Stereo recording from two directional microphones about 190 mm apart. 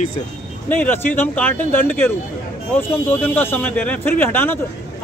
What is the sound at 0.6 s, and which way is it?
Speech, 10° left (ahead or behind).